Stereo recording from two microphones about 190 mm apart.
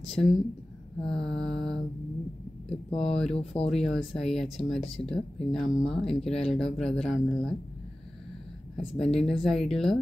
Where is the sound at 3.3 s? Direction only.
30° left (ahead or behind).